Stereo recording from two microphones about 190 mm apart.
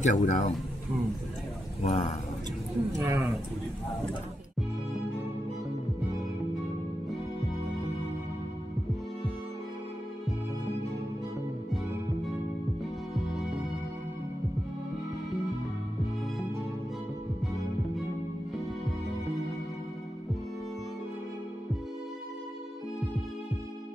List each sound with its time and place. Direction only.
0.0 s speech: 40° left (ahead or behind)
1.8 s speech: 35° left (ahead or behind)
3.0 s speech: 15° right (ahead or behind)